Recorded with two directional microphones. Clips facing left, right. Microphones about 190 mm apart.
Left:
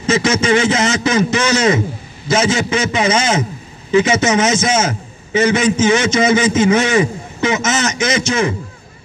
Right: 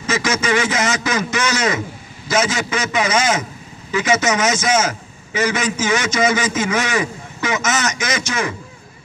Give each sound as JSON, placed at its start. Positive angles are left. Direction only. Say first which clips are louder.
{"t": 0.0, "sound": "a man's voice", "louder": "left 5 dB", "side_deg": 25}